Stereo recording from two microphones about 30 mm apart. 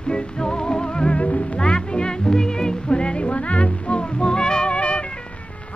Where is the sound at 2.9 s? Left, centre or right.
Left.